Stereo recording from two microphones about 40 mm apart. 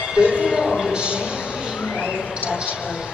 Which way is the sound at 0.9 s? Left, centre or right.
Right.